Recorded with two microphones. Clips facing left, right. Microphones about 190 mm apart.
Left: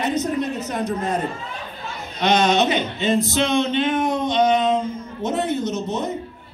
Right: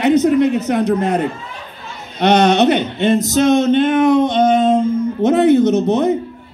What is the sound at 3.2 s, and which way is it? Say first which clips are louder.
Music: right 7 dB; 40° right (ahead or behind).